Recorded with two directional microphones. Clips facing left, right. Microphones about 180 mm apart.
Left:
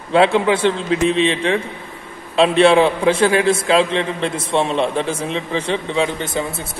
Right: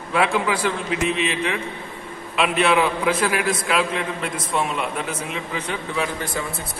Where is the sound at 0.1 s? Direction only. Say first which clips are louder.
Left 7 dB; 25° left (ahead or behind).